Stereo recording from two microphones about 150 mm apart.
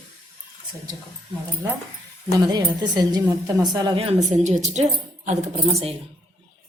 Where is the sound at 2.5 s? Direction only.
30° right (ahead or behind).